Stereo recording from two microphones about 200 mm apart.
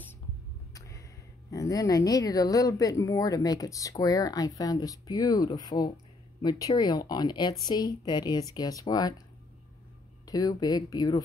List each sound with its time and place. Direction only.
0.7 s a sound: 15° left (ahead or behind)
1.5 s a woman's voice: 15° left (ahead or behind)
10.2 s a woman's voice: 20° left (ahead or behind)